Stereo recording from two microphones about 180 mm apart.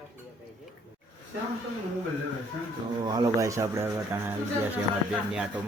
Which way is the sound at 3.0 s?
20° right (ahead or behind).